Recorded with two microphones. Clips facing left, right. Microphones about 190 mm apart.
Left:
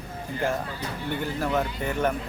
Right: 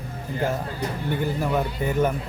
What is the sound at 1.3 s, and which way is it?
Speech, 10° right (ahead or behind).